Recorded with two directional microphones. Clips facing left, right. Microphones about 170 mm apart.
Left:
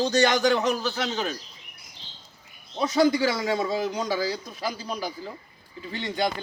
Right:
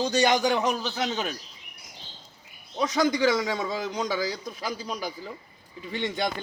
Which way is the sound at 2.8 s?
30° left (ahead or behind).